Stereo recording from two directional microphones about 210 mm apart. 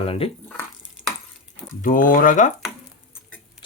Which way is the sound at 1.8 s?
40° left (ahead or behind).